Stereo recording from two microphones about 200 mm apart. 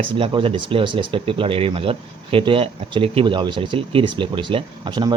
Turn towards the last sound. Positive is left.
turn(degrees=-20)  # may be behind; listen again after turning